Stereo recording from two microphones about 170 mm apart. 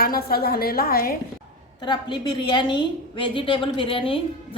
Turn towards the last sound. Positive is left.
turn(degrees=30)  # may be behind; listen again after turning